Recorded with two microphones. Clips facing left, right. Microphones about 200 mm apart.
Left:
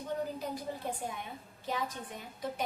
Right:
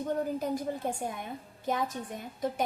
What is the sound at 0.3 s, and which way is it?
A woman's voice, 50° right (ahead or behind).